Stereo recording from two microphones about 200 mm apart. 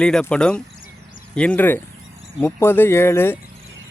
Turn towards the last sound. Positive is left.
turn(degrees=10)  # may be behind; listen again after turning